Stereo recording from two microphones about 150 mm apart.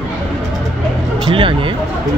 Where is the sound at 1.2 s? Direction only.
35° right (ahead or behind).